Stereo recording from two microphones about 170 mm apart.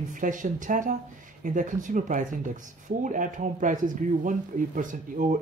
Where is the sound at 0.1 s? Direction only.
50° right (ahead or behind).